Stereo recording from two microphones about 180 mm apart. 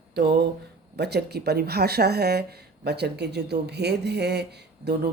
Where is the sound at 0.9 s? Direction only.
65° right (ahead or behind).